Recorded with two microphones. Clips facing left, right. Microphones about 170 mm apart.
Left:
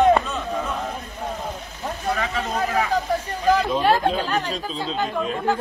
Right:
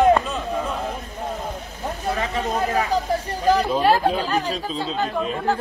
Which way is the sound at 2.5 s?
30° right (ahead or behind).